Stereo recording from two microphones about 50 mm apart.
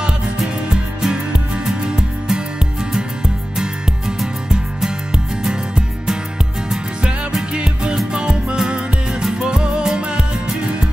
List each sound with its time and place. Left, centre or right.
0.7 s music: centre
4.2 s music: centre
7.5 s music: centre